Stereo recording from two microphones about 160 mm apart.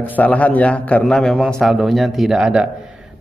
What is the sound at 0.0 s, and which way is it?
A man's voice, 10° left (ahead or behind).